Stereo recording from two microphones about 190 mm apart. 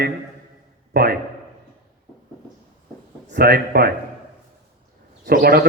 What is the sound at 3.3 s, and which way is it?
Speech, 55° right (ahead or behind).